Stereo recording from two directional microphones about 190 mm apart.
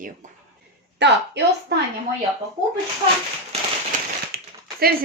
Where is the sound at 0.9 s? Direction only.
65° right (ahead or behind).